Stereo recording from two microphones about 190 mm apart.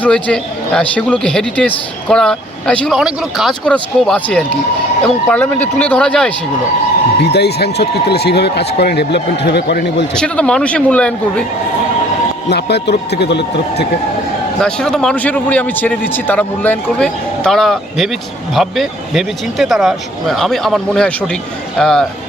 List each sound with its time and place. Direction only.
0.0 s speech: 5° left (ahead or behind)
7.2 s speech: 60° left (ahead or behind)
10.2 s speech: 5° left (ahead or behind)
12.5 s speech: 60° left (ahead or behind)
14.6 s speech: 5° left (ahead or behind)